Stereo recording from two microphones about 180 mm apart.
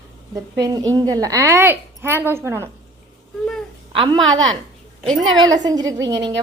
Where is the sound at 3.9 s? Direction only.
30° right (ahead or behind).